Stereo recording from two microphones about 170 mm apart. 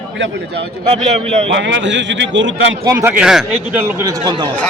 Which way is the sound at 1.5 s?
90° right.